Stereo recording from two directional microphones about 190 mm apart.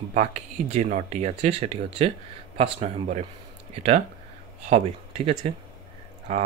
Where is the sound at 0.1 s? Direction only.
35° right (ahead or behind).